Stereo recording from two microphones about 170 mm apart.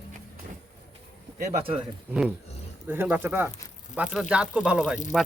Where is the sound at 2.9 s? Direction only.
10° right (ahead or behind).